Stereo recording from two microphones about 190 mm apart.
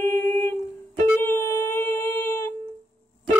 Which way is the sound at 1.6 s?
15° left (ahead or behind).